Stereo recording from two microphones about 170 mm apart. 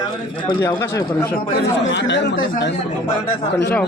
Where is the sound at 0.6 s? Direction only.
15° left (ahead or behind).